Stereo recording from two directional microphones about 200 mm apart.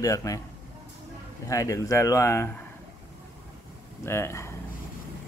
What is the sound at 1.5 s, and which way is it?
Speech, 15° left (ahead or behind).